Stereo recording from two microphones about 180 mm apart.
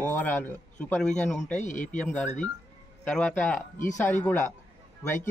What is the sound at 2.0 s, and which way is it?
A man's voice, 5° left (ahead or behind).